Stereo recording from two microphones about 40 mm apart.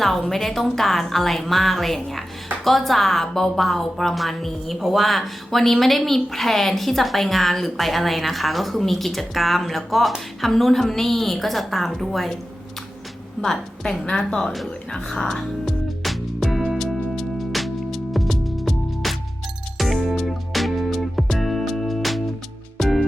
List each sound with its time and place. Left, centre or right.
0.2 s a woman's voice: centre
13.4 s speech: centre
16.0 s music: centre